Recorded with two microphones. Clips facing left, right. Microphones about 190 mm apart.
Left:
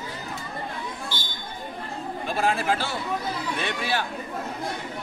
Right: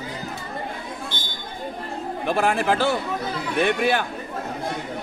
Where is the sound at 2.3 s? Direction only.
65° right (ahead or behind).